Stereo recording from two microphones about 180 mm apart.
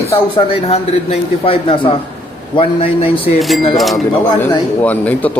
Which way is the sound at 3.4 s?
Centre (ahead or behind).